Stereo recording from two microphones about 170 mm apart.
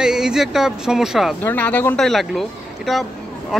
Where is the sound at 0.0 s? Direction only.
5° right (ahead or behind).